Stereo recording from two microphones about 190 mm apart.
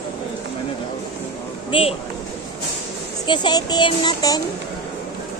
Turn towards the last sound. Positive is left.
turn(degrees=20)  # may be behind; listen again after turning